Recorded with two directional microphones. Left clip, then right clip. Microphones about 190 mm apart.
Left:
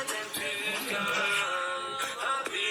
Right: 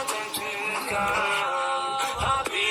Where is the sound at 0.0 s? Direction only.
15° right (ahead or behind).